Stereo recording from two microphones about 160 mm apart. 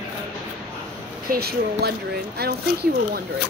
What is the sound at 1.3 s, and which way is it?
A woman's voice, 80° right.